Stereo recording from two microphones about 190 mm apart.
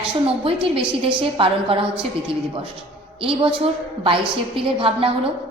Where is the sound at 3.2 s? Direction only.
30° right (ahead or behind).